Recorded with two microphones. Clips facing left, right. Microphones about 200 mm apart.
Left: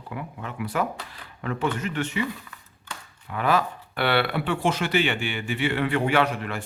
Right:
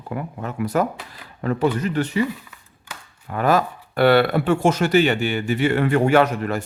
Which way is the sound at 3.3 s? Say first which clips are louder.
Right 4 dB; 45° right (ahead or behind).